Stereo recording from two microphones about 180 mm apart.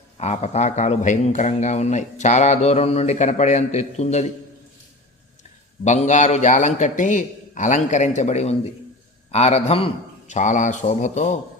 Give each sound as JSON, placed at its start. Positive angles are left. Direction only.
{"t": 0.2, "sound": "speech", "side_deg": 35}
{"t": 5.8, "sound": "speech", "side_deg": 40}